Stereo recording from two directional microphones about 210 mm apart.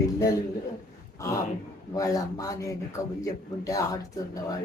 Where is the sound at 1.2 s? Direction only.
15° left (ahead or behind).